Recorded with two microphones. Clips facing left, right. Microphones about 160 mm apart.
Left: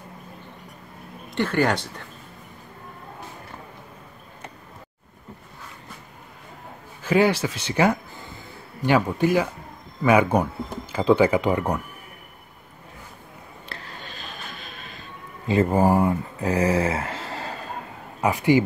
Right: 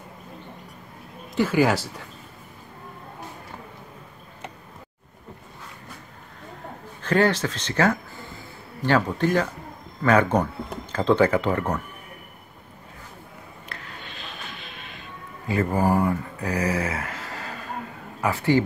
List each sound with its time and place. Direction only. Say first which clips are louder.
1.3 s speech: right 2 dB; 5° right (ahead or behind)
7.0 s speech: left 1 dB; 10° left (ahead or behind)
13.7 s music: left 2 dB; 30° left (ahead or behind)
15.4 s speech: left 3 dB; 25° left (ahead or behind)
18.2 s speech: left 2 dB; 15° left (ahead or behind)